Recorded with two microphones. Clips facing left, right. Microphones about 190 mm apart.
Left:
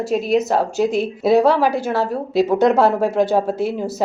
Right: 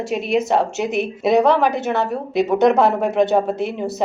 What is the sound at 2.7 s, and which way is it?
Speech, 20° right (ahead or behind).